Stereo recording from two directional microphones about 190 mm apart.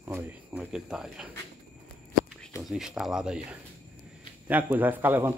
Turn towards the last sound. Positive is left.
turn(degrees=-10)  # may be behind; listen again after turning